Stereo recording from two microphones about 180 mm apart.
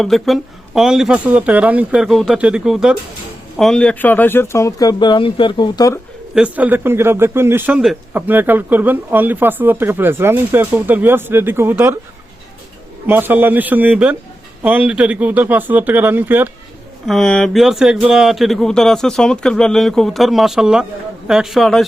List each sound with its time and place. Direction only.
0.0 s speech: centre (ahead or behind); by 6.0 s 20° left (ahead or behind)
6.3 s speech: 5° right (ahead or behind)
13.1 s speech: 10° right (ahead or behind)
17.1 s speech: 5° left (ahead or behind)